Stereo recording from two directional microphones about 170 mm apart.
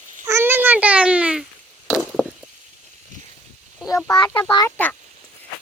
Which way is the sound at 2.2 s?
10° left (ahead or behind).